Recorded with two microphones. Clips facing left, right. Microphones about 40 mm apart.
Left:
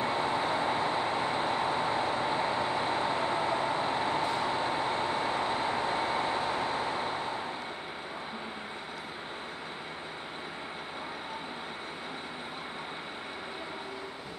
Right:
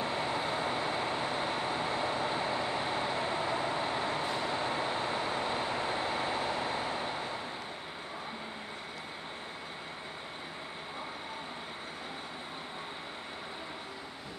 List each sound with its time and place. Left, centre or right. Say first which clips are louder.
0.0 s vehicle: left 3 dB; left
3.3 s vehicle: left 3 dB; centre